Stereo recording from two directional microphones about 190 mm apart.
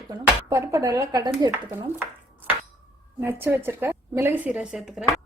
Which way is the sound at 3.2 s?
10° right (ahead or behind).